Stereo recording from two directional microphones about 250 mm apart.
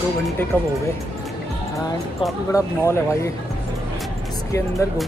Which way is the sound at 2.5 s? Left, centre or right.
Centre.